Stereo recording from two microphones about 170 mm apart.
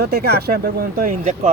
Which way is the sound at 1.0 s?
50° right (ahead or behind).